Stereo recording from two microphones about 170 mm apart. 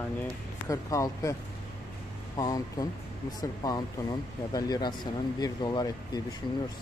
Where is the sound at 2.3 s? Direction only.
20° left (ahead or behind).